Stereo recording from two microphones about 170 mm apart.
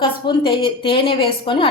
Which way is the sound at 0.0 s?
30° left (ahead or behind).